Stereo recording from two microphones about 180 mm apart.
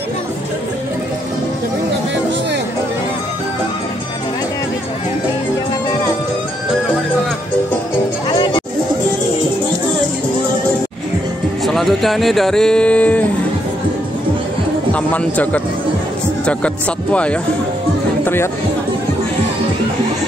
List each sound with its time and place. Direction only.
8.3 s music: 30° left (ahead or behind)
11.6 s speech: centre (ahead or behind)
14.9 s speech: 5° left (ahead or behind)